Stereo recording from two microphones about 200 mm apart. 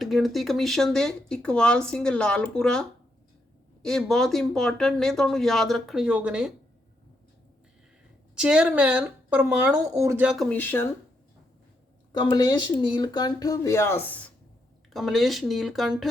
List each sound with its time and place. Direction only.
0.0 s speech: centre (ahead or behind)
3.8 s speech: centre (ahead or behind)
8.4 s speech: 5° right (ahead or behind); by 10.9 s 10° left (ahead or behind)
12.1 s speech: 20° left (ahead or behind)
14.9 s speech: centre (ahead or behind)